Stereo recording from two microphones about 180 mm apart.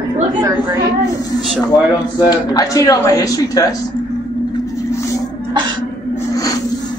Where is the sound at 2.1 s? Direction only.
20° left (ahead or behind).